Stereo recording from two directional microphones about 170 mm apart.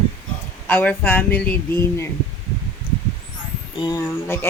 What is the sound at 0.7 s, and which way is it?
Speech, 10° left (ahead or behind).